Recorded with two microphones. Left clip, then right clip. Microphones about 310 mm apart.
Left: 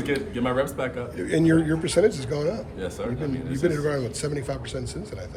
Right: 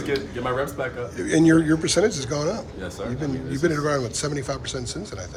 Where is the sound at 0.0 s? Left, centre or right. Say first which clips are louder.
Even; centre.